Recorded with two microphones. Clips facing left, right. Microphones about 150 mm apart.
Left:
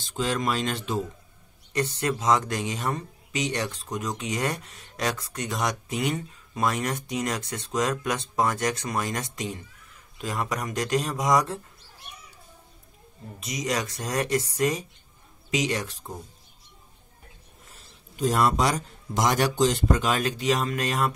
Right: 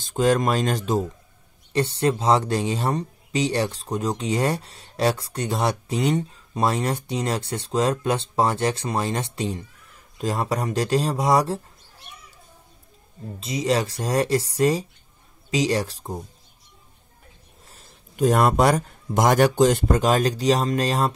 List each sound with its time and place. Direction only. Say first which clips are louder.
0.0 s speech: right 7 dB; 45° right (ahead or behind)
1.7 s speech: right 5 dB; 30° right (ahead or behind)
13.4 s speech: right 6 dB; 30° right (ahead or behind)
17.6 s a man's voice: right 2 dB; 45° right (ahead or behind)